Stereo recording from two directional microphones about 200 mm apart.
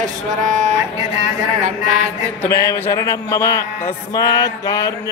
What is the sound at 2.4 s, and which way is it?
A man's voice, 15° left (ahead or behind).